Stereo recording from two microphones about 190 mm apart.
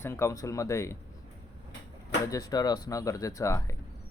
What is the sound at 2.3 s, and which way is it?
Speech, 20° left (ahead or behind).